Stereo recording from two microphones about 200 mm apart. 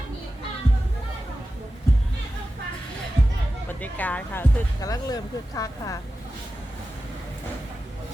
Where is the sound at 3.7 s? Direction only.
10° left (ahead or behind).